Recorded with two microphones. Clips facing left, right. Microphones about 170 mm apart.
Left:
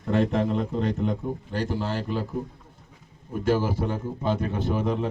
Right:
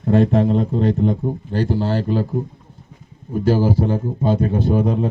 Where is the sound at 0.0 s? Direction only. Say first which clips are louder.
Right 7 dB; 35° right (ahead or behind).